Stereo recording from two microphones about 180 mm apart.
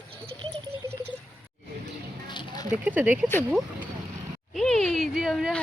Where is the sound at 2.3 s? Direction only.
25° left (ahead or behind).